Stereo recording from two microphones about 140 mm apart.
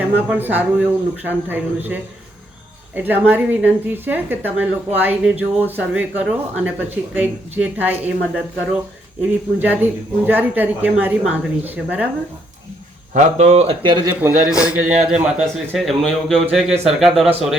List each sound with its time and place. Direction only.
0.0 s speech: 10° right (ahead or behind)
9.2 s speech: 10° right (ahead or behind)
13.1 s speech: 55° right (ahead or behind)
13.8 s speech: 35° right (ahead or behind)
14.2 s a man's voice: 10° right (ahead or behind)